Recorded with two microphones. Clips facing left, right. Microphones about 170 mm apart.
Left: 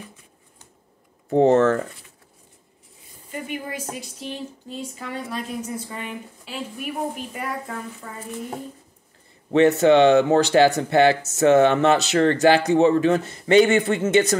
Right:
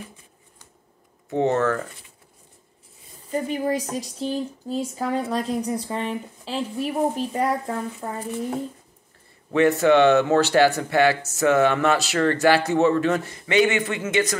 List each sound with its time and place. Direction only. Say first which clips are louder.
1.3 s speech: left 5 dB; 30° left (ahead or behind)
3.3 s a woman's voice: right 7 dB; 35° right (ahead or behind)
9.5 s speech: left 2 dB; 25° left (ahead or behind)